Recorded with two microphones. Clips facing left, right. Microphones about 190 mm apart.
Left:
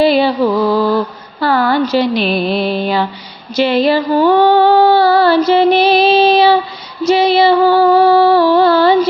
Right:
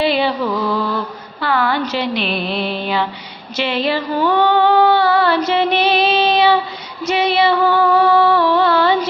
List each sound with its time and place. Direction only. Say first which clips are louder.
0.0 s mantra: left 6 dB; 40° left (ahead or behind)
1.4 s speech: left 5 dB; 40° left (ahead or behind)
3.5 s female singing: left 7 dB; 40° left (ahead or behind)
7.0 s music: left 6 dB; 35° left (ahead or behind)